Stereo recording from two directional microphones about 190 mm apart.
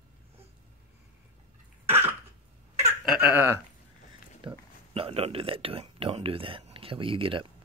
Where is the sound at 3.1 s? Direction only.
10° right (ahead or behind).